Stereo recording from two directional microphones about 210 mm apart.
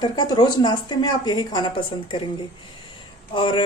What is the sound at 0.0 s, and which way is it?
A woman's voice, 20° left (ahead or behind).